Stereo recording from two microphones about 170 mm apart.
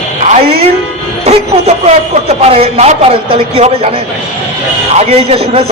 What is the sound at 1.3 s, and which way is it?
Speech, 40° right (ahead or behind).